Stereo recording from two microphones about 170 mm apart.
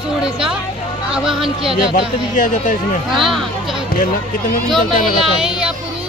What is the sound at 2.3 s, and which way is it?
Speech, 50° left (ahead or behind).